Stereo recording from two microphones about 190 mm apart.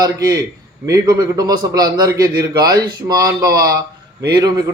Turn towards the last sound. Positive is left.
turn(degrees=-20)  # may be behind; listen again after turning